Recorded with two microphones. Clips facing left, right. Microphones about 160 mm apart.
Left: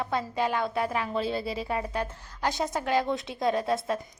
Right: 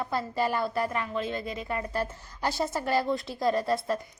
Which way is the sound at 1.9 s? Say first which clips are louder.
Right 1 dB; 5° right (ahead or behind).